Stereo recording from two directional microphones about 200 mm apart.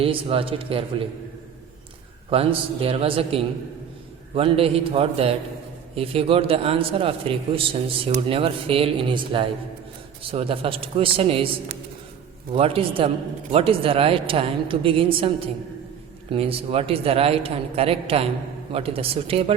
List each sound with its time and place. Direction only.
0.0 s a man's voice: 25° right (ahead or behind)
2.3 s a man's voice: 30° right (ahead or behind)